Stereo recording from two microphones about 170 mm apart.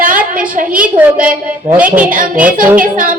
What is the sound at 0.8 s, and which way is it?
A woman's voice, 5° right (ahead or behind).